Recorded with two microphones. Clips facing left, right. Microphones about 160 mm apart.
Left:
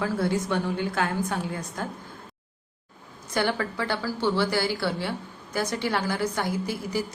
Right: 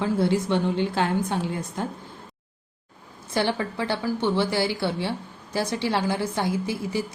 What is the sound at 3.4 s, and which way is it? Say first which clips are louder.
A woman's voice: right 1 dB; 25° right (ahead or behind).